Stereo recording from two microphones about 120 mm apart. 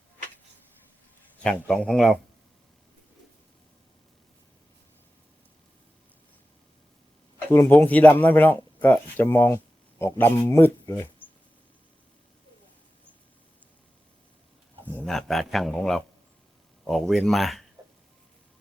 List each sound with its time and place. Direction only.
1.5 s a man's voice: 5° left (ahead or behind)
7.5 s speech: 20° left (ahead or behind)
15.0 s a man's voice: centre (ahead or behind)